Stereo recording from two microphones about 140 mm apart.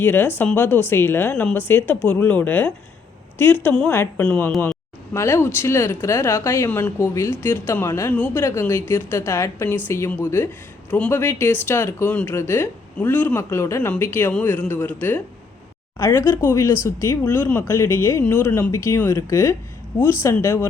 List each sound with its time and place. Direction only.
0.0 s speech: 15° left (ahead or behind)
5.1 s speech: 20° left (ahead or behind)